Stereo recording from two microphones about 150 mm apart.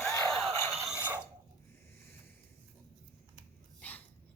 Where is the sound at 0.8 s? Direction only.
10° right (ahead or behind).